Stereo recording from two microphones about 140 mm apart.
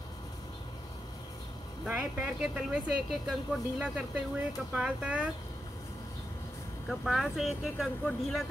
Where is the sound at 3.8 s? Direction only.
10° right (ahead or behind).